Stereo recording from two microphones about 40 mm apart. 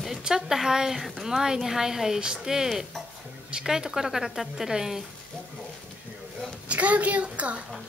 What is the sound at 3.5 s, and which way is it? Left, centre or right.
A woman's voice, centre.